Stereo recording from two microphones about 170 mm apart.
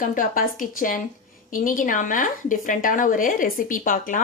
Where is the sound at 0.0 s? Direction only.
50° left (ahead or behind).